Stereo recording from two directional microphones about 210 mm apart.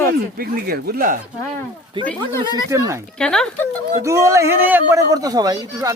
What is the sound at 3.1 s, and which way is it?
Speech, 5° left (ahead or behind).